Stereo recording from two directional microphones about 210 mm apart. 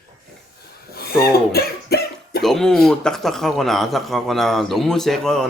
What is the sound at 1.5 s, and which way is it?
Cough, 50° left (ahead or behind).